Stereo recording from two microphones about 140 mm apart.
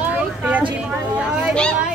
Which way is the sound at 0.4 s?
10° right (ahead or behind).